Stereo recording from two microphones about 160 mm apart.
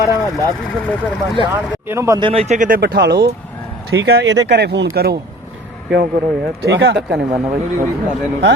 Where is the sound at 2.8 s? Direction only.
90° right.